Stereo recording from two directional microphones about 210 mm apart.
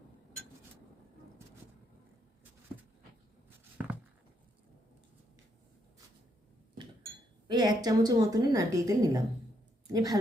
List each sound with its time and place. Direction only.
7.4 s a woman's voice: 20° right (ahead or behind)